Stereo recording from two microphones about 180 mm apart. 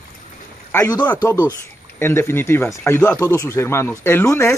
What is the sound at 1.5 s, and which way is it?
Speech, 15° left (ahead or behind).